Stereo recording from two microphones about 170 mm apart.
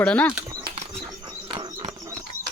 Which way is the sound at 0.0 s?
10° left (ahead or behind).